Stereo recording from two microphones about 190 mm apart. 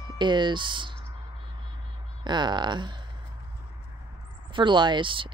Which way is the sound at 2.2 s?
25° right (ahead or behind).